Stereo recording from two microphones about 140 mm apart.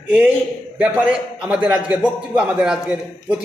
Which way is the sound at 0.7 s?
10° right (ahead or behind).